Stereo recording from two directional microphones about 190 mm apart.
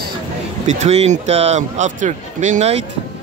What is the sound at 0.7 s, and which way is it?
Speech, 35° right (ahead or behind).